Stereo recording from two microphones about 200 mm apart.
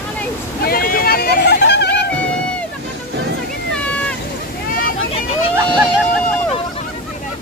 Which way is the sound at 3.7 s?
5° left (ahead or behind).